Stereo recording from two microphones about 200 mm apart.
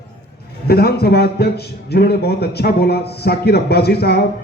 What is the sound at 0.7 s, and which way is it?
A man's voice, 50° left (ahead or behind).